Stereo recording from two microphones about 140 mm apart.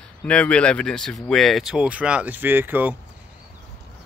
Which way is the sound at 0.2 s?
10° left (ahead or behind).